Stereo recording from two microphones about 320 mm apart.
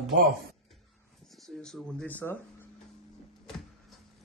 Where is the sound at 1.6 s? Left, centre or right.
Centre.